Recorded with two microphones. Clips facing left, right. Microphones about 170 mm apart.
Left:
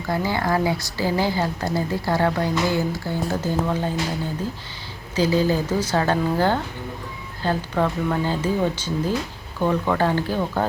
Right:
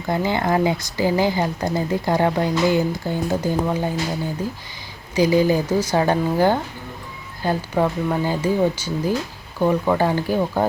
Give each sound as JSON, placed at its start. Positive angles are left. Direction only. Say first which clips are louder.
{"t": 0.1, "sound": "speech", "louder": "right 2 dB", "side_deg": -20}
{"t": 5.1, "sound": "speech", "louder": "right 3 dB", "side_deg": -15}